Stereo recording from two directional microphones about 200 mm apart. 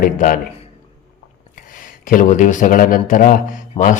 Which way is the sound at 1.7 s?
45° left (ahead or behind).